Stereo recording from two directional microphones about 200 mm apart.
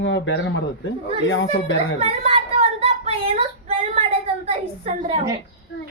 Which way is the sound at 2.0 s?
30° right (ahead or behind).